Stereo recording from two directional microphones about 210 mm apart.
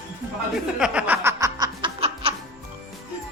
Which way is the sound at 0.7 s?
5° right (ahead or behind).